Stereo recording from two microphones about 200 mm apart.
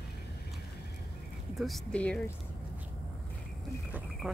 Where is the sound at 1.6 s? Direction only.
5° left (ahead or behind).